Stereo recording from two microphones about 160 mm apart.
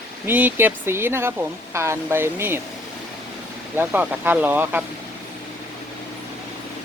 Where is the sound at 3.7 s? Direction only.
10° right (ahead or behind).